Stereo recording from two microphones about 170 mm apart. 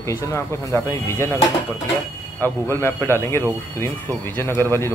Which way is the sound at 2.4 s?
15° left (ahead or behind).